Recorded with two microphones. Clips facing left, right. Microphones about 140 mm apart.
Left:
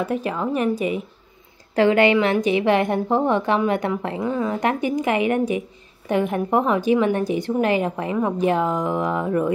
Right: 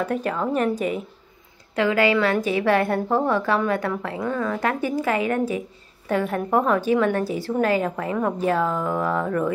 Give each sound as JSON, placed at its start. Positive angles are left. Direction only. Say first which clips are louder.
{"t": 0.0, "sound": "a woman's voice", "louder": "left 1 dB", "side_deg": 10}
{"t": 1.8, "sound": "a woman's voice", "louder": "left 4 dB", "side_deg": 30}
{"t": 2.1, "sound": "a woman's voice", "louder": "left 2 dB", "side_deg": 15}